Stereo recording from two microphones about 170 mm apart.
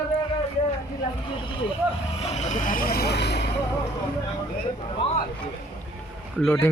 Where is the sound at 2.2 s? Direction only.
40° left (ahead or behind); by 3.4 s 80° left.